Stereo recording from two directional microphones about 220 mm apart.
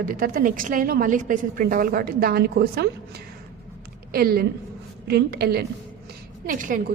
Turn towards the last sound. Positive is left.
turn(degrees=-35)  # may be behind; listen again after turning